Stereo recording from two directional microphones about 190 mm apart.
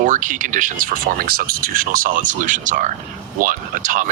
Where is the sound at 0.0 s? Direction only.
45° right (ahead or behind).